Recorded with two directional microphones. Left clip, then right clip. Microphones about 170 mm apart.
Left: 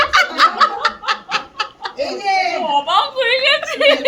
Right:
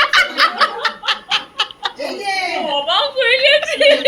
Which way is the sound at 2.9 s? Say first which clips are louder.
Right 3 dB; 70° left (ahead or behind).